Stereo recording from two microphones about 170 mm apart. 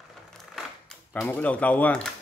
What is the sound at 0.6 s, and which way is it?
Typewriter, centre (ahead or behind).